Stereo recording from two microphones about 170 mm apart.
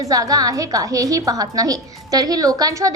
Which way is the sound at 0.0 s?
20° right (ahead or behind).